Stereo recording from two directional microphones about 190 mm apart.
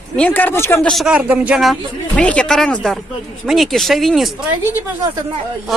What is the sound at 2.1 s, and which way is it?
Speech, 5° left (ahead or behind).